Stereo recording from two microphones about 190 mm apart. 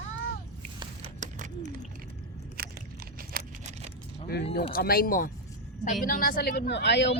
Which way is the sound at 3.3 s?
50° right (ahead or behind).